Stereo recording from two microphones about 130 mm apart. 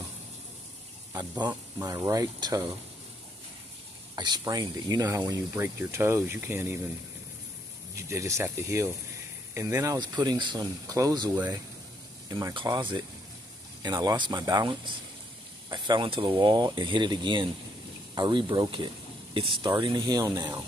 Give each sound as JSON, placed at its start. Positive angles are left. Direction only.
{"t": 1.1, "sound": "speech", "side_deg": -30}
{"t": 4.1, "sound": "speech", "side_deg": -30}
{"t": 5.5, "sound": "speech", "side_deg": -20}
{"t": 7.9, "sound": "speech", "side_deg": -20}